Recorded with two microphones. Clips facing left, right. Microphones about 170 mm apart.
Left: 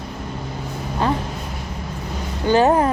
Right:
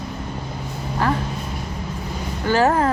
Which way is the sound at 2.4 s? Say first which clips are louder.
Left 2 dB; 20° left (ahead or behind).